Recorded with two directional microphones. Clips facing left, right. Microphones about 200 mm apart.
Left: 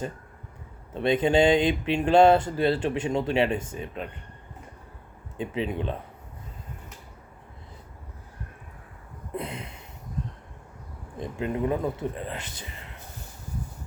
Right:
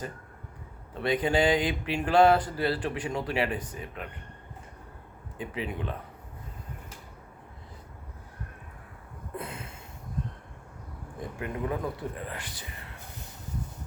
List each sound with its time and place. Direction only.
0.9 s speech: 25° left (ahead or behind)
5.4 s speech: 25° left (ahead or behind)
9.3 s a sound: 20° left (ahead or behind)
11.2 s speech: 25° left (ahead or behind)